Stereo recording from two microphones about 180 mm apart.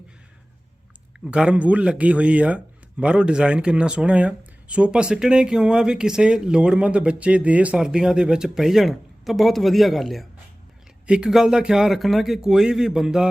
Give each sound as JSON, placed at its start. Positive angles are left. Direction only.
{"t": 1.2, "sound": "speech", "side_deg": -5}